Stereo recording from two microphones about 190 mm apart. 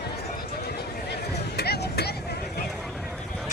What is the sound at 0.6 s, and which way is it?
Vehicle, 55° left (ahead or behind).